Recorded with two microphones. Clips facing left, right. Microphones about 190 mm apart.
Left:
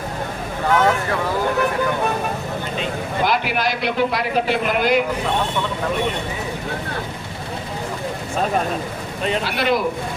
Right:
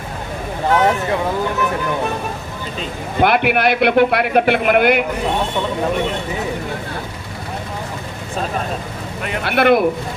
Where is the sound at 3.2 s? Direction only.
60° right (ahead or behind).